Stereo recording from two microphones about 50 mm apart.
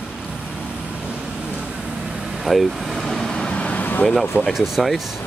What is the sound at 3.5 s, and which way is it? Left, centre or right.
Vehicle, left.